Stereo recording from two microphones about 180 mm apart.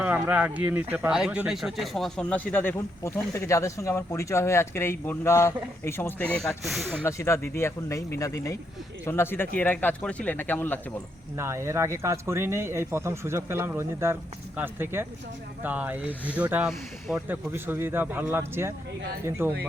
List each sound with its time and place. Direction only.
0.0 s speech: 10° right (ahead or behind); by 6.6 s 10° left (ahead or behind)
6.6 s speech: centre (ahead or behind)
7.0 s speech: 15° left (ahead or behind)
11.3 s speech: 15° right (ahead or behind)